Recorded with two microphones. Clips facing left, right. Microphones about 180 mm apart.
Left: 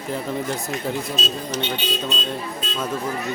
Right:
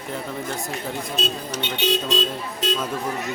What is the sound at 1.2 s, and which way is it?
Speech, 60° right (ahead or behind).